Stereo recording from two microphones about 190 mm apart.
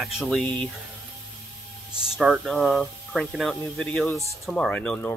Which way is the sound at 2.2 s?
Centre (ahead or behind).